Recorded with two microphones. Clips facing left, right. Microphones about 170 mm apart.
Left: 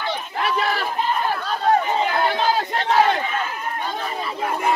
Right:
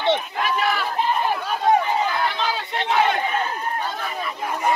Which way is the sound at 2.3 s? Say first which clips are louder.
Left 5 dB; 40° left (ahead or behind).